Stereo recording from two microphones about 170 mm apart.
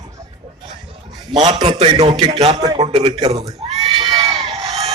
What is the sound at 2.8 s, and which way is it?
Speech, 35° right (ahead or behind).